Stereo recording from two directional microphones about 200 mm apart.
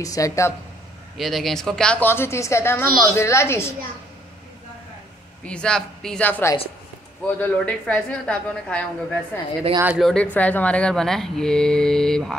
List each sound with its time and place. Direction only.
0.0 s a woman's voice: 15° left (ahead or behind)
1.1 s a woman's voice: centre (ahead or behind)
5.4 s speech: 5° left (ahead or behind)
9.8 s speech: 5° right (ahead or behind)